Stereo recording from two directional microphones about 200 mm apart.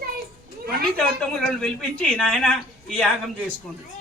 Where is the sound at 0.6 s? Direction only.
50° right (ahead or behind).